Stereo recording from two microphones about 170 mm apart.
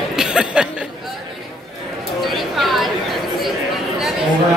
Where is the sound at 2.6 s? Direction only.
Centre (ahead or behind).